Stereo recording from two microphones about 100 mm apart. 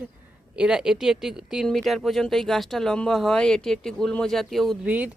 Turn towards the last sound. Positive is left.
turn(degrees=-15)  # may be behind; listen again after turning